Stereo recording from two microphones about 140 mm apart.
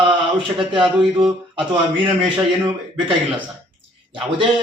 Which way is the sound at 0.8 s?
Centre (ahead or behind).